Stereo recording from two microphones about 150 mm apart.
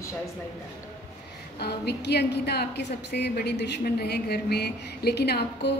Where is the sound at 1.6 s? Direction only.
90° left.